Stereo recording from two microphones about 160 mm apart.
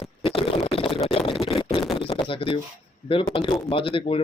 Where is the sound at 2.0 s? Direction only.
35° left (ahead or behind).